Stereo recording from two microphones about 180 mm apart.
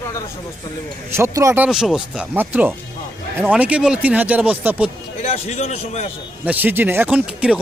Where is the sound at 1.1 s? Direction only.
15° right (ahead or behind).